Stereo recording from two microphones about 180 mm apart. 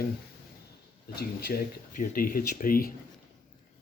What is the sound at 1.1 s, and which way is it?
Speech, 55° left (ahead or behind).